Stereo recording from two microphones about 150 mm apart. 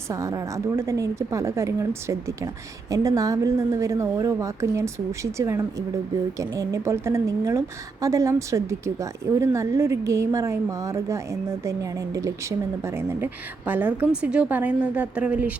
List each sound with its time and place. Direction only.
0.1 s a woman's voice: 20° right (ahead or behind)